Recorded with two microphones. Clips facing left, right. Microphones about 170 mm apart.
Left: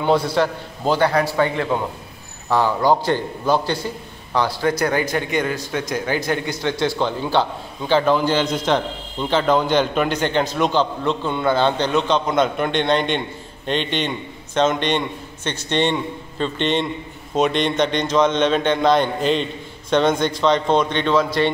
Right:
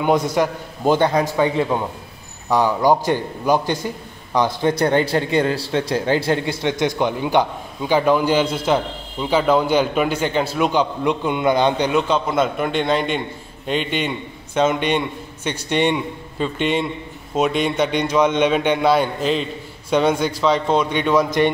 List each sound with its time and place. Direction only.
0.0 s a man's voice: 20° right (ahead or behind)